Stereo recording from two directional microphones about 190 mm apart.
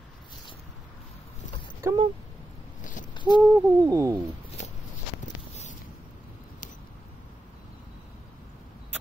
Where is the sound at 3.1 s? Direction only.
25° left (ahead or behind).